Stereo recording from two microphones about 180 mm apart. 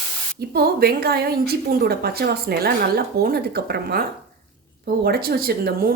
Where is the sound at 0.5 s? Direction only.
60° right (ahead or behind).